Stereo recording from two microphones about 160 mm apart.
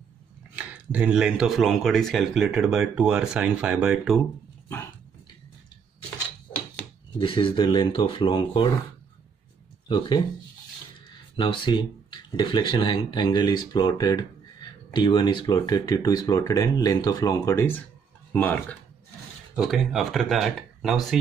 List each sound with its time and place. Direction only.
0.6 s speech: 10° right (ahead or behind)
7.2 s speech: 30° left (ahead or behind)
9.8 s speech: 25° left (ahead or behind)
11.3 s speech: 30° left (ahead or behind); by 18.8 s 10° left (ahead or behind)
19.5 s speech: centre (ahead or behind)